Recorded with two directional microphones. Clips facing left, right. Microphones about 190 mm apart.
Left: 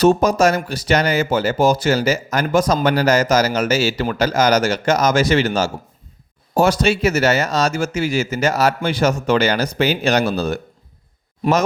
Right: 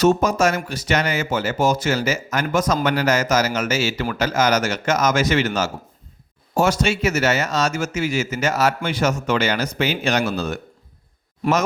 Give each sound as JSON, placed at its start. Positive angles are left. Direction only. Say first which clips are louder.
{"t": 0.0, "sound": "speech", "louder": "left 3 dB", "side_deg": 35}